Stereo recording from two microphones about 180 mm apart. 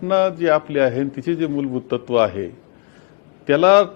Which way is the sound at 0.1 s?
20° left (ahead or behind).